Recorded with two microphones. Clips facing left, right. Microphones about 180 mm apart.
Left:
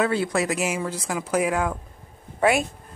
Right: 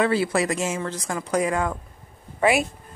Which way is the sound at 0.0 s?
Centre (ahead or behind).